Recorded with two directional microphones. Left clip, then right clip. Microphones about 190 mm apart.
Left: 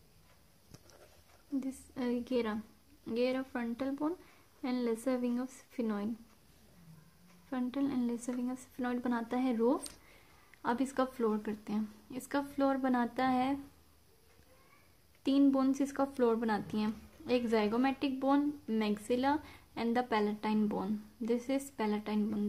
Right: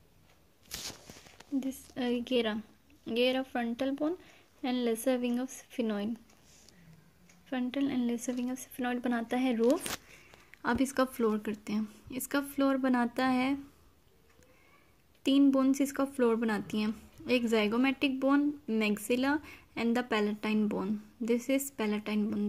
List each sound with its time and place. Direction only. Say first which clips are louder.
1.6 s speech: right 4 dB; centre (ahead or behind)
7.4 s speech: right 3 dB; 5° left (ahead or behind)
10.6 s speech: right 3 dB; 20° right (ahead or behind)
15.2 s speech: right 3 dB; 15° right (ahead or behind)